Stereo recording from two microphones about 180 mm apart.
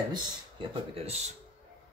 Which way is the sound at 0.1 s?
30° right (ahead or behind).